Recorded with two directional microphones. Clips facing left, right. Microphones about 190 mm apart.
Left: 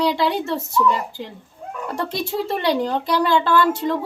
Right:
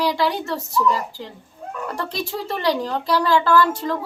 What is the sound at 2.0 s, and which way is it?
Speech, 25° left (ahead or behind).